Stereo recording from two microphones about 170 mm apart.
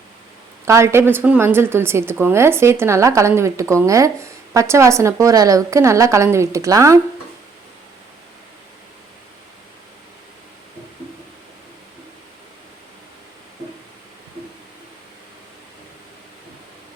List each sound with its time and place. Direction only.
0.6 s a woman's voice: 15° right (ahead or behind)